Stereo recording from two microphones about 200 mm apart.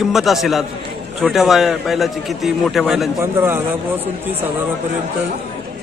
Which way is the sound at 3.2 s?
10° right (ahead or behind).